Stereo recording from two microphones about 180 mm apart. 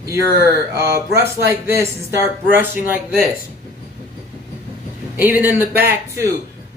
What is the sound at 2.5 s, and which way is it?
Speech, 10° right (ahead or behind).